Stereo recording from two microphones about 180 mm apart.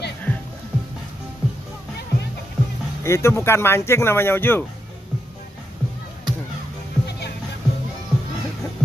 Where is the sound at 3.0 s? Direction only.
15° left (ahead or behind).